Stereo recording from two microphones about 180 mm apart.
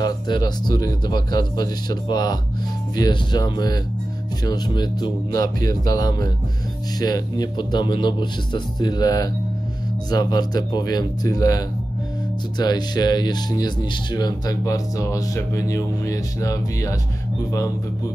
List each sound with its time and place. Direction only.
0.0 s speech: 20° left (ahead or behind)